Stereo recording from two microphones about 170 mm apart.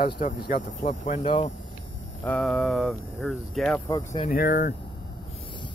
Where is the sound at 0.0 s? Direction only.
55° left (ahead or behind).